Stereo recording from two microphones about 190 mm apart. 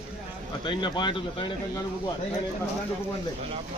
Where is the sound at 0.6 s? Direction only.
25° left (ahead or behind).